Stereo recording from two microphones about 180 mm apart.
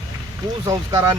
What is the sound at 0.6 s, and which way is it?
Speech, 20° right (ahead or behind).